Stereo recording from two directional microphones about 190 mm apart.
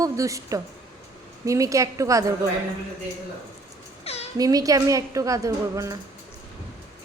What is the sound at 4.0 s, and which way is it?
Cat, 30° left (ahead or behind).